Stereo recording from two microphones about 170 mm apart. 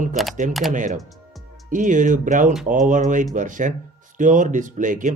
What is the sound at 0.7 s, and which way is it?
Speech, 50° right (ahead or behind).